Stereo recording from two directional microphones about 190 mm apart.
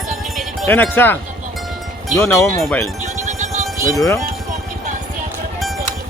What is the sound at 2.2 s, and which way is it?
Speech, 15° left (ahead or behind).